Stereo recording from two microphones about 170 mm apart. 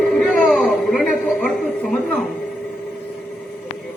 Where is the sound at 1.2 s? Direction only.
5° left (ahead or behind).